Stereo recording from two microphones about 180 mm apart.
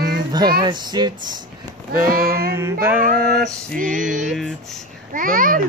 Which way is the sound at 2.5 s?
15° right (ahead or behind).